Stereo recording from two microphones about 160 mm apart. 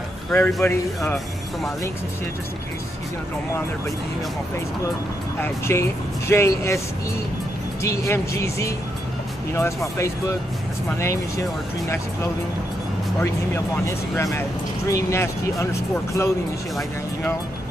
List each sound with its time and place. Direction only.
0.3 s a man's voice: 5° left (ahead or behind)
5.4 s speech: 15° left (ahead or behind)
7.8 s speech: 15° left (ahead or behind)
13.8 s speech: 15° left (ahead or behind)